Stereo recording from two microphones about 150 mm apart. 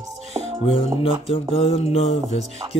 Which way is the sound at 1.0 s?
40° left (ahead or behind).